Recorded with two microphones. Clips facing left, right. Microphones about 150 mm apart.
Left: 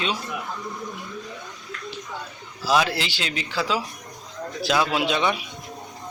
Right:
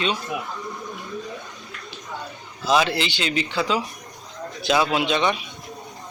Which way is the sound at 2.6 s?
5° left (ahead or behind).